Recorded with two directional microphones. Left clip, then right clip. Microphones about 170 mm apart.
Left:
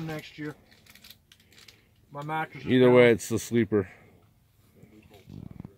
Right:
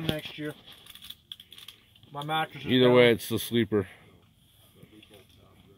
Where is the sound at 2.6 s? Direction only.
10° left (ahead or behind).